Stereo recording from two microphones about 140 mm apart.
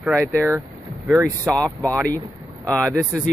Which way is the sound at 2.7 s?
20° right (ahead or behind).